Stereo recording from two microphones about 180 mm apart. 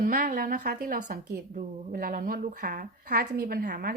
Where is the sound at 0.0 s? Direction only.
50° right (ahead or behind).